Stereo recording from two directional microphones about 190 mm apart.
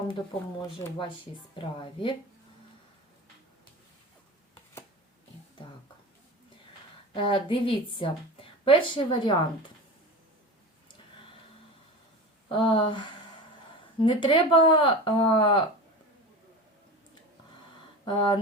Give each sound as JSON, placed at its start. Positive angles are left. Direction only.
{"t": 0.6, "sound": "a woman's voice", "side_deg": 25}
{"t": 7.1, "sound": "a woman's voice", "side_deg": 25}
{"t": 12.5, "sound": "a woman's voice", "side_deg": 25}
{"t": 18.0, "sound": "speech", "side_deg": 25}